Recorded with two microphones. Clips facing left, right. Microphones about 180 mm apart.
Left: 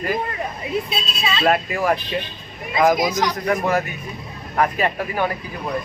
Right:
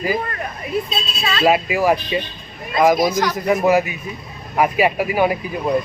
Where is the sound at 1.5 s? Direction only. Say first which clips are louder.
Right 4 dB; 5° right (ahead or behind).